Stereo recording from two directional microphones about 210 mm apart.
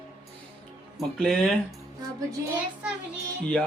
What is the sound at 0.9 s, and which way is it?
Speech, centre (ahead or behind).